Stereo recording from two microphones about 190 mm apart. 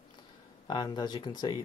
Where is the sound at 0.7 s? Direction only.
20° left (ahead or behind).